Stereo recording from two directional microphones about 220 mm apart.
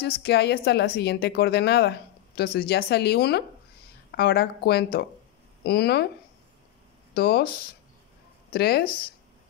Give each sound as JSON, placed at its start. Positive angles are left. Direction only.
{"t": 0.0, "sound": "speech", "side_deg": 50}
{"t": 7.2, "sound": "speech", "side_deg": 45}
{"t": 8.5, "sound": "speech", "side_deg": 45}